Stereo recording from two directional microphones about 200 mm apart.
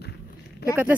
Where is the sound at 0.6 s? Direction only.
55° left (ahead or behind).